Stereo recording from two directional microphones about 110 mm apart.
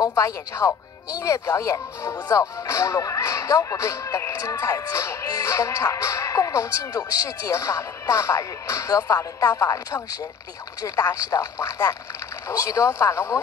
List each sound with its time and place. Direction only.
0.0 s speech: 25° left (ahead or behind)